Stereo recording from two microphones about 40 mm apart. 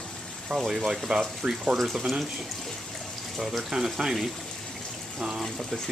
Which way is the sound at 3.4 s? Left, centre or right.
Centre.